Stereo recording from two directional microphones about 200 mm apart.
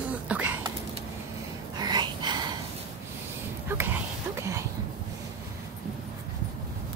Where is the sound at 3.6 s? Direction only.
10° right (ahead or behind).